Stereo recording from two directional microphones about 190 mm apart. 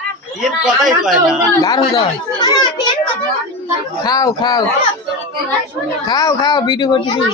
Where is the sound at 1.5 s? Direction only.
20° left (ahead or behind).